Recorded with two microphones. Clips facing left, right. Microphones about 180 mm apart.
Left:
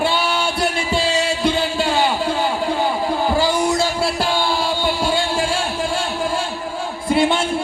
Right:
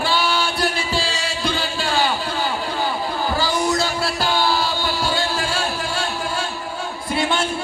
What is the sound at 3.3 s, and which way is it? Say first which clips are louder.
Music: left 1 dB; 25° left (ahead or behind).